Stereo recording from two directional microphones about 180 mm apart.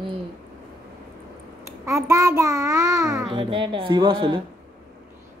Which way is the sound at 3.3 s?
25° right (ahead or behind).